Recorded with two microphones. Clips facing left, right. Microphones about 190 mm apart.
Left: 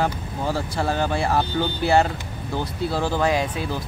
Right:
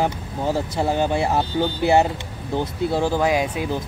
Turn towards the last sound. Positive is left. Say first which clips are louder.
# right 2 dB
turn(degrees=-10)  # may be behind; listen again after turning